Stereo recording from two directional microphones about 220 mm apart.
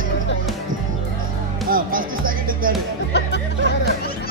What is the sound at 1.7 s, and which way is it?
Music, 40° right (ahead or behind).